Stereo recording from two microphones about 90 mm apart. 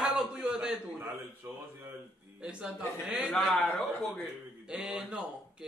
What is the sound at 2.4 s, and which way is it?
A man's voice, 10° right (ahead or behind).